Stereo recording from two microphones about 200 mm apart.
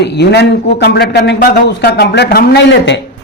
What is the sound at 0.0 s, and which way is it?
A man's voice, 55° left (ahead or behind).